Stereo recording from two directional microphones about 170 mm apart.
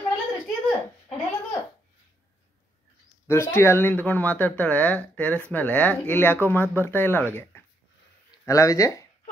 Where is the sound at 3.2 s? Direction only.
15° left (ahead or behind).